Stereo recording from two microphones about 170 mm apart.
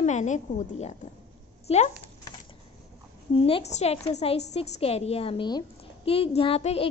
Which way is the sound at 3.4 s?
35° left (ahead or behind).